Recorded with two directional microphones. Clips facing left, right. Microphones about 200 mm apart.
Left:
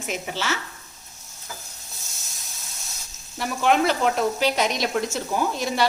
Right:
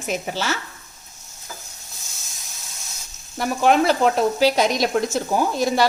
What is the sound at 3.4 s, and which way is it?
Speech, 40° right (ahead or behind).